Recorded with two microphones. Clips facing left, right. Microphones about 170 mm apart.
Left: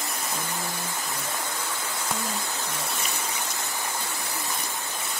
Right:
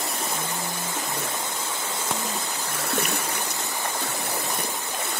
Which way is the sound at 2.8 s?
65° right (ahead or behind).